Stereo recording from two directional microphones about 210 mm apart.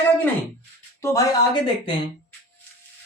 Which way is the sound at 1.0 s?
15° left (ahead or behind).